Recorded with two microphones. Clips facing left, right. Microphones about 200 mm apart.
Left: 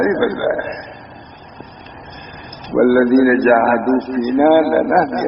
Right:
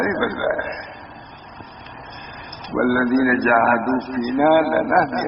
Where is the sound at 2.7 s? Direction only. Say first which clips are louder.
Left 7 dB; 30° left (ahead or behind).